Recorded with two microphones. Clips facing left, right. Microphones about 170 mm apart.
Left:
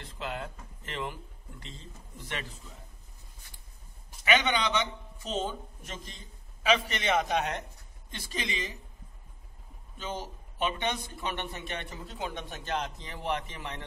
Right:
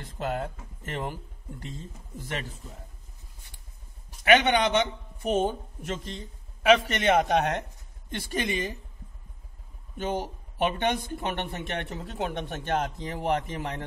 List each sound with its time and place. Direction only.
0.0 s speech: 45° right (ahead or behind)
2.1 s speech: 45° right (ahead or behind)
4.2 s a man's voice: 60° right (ahead or behind)
5.4 s a man's voice: 65° right (ahead or behind)
9.9 s a man's voice: 60° right (ahead or behind)
13.0 s speech: 45° right (ahead or behind)